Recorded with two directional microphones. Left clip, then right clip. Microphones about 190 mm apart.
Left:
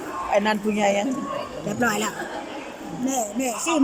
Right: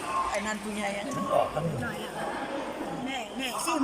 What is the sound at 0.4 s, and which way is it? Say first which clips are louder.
Speech: left 11 dB; 55° left (ahead or behind).